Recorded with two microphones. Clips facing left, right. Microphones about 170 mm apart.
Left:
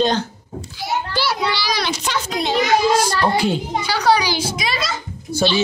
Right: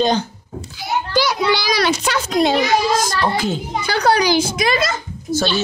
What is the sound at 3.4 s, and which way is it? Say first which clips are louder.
A woman's voice: left 1 dB; 50° right (ahead or behind).